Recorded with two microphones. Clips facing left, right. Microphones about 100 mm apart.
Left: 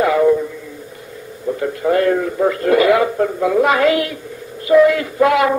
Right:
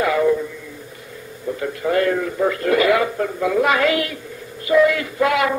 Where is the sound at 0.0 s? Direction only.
30° left (ahead or behind).